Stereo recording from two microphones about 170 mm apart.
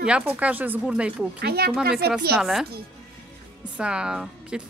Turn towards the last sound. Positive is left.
turn(degrees=-5)  # may be behind; listen again after turning